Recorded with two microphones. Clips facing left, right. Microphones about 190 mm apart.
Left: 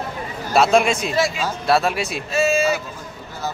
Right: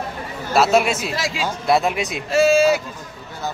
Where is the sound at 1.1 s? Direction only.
90° right.